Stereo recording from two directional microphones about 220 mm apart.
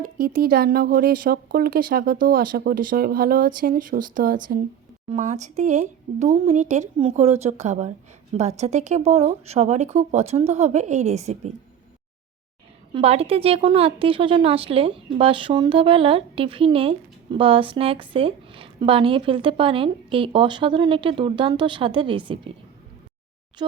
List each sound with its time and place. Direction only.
0.0 s speech: 40° right (ahead or behind)
12.9 s a woman's voice: 25° right (ahead or behind)
23.6 s a woman's voice: 20° right (ahead or behind)